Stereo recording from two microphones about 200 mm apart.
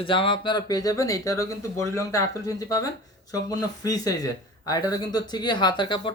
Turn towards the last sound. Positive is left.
turn(degrees=25)  # may be behind; listen again after turning